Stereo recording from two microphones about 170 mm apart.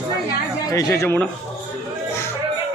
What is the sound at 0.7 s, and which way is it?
Speech, 20° left (ahead or behind).